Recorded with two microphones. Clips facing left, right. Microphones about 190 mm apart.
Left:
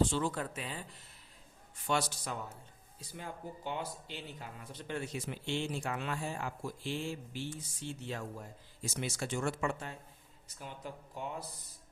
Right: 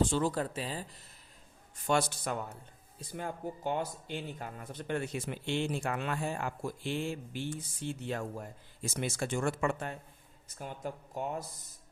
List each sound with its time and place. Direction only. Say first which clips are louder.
0.1 s speech: right 4 dB; 40° right (ahead or behind)
1.9 s speech: right 4 dB; 55° right (ahead or behind)